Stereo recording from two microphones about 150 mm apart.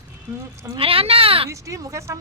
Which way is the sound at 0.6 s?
35° right (ahead or behind).